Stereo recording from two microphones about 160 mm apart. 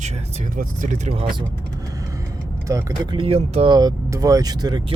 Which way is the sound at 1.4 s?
20° right (ahead or behind).